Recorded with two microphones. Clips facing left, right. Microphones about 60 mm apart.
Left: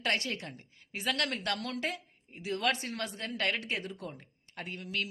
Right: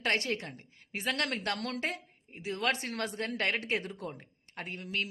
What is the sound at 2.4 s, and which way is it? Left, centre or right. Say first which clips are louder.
Speech: left 1 dB; right.